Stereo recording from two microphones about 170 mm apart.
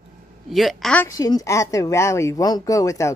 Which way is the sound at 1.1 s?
20° left (ahead or behind).